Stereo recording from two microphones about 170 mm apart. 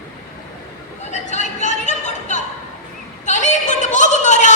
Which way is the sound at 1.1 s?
45° left (ahead or behind).